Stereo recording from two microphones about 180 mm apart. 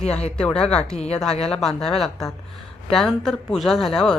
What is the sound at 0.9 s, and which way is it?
Speech, 35° left (ahead or behind).